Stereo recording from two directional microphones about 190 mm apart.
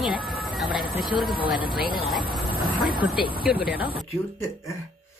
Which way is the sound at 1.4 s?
25° left (ahead or behind).